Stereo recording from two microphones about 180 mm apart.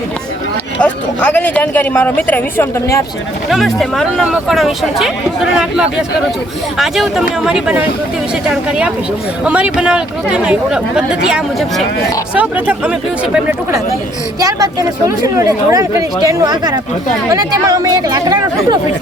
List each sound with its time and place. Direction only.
0.8 s speech: 5° left (ahead or behind)
3.5 s speech: centre (ahead or behind)
9.4 s speech: 5° right (ahead or behind)
14.3 s speech: 20° right (ahead or behind)